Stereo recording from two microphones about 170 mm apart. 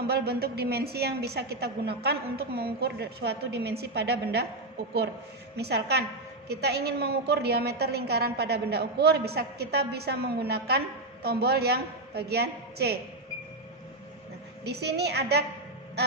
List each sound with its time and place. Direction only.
0.0 s a woman's voice: 70° right (ahead or behind)
5.6 s a woman's voice: 75° right (ahead or behind)
14.6 s a woman's voice: 75° right (ahead or behind)